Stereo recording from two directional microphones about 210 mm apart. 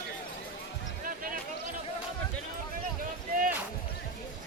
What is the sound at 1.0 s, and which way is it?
Music, 40° right (ahead or behind).